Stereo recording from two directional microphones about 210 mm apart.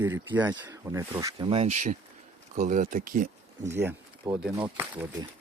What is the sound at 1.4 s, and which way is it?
Speech, 30° right (ahead or behind).